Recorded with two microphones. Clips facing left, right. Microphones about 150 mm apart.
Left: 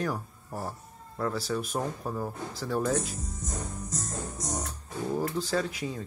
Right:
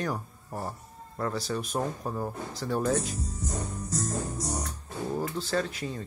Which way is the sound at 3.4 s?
35° right (ahead or behind).